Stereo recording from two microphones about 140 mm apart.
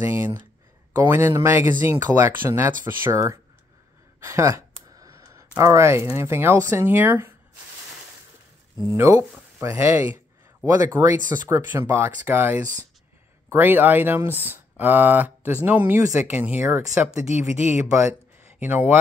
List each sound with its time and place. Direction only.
0.0 s speech: 15° right (ahead or behind)
4.2 s a sound: 20° right (ahead or behind)
5.6 s speech: 20° right (ahead or behind)
8.8 s speech: 20° right (ahead or behind)
11.5 s speech: 15° right (ahead or behind)